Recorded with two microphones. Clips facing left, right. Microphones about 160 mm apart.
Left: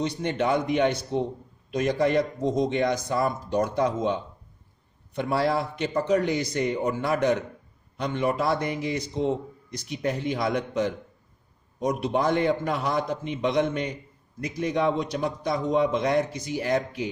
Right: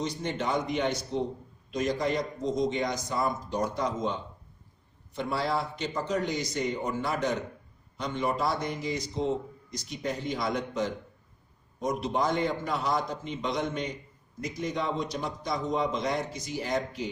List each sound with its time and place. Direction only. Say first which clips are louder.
0.0 s a man's voice: left 5 dB; 60° left (ahead or behind)